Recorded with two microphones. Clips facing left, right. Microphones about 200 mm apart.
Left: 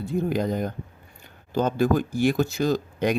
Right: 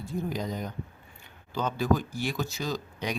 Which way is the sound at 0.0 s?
60° left (ahead or behind).